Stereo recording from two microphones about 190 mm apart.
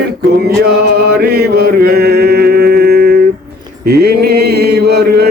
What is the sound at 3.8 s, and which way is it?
Mantra, 55° right (ahead or behind).